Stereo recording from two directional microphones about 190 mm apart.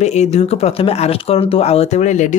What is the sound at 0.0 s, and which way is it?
Speech, 35° left (ahead or behind).